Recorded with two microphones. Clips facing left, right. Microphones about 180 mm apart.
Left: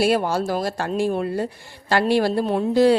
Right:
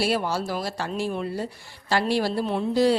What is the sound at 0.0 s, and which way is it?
Speech, 50° left (ahead or behind).